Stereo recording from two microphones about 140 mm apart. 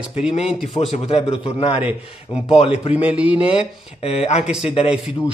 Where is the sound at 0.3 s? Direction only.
45° left (ahead or behind).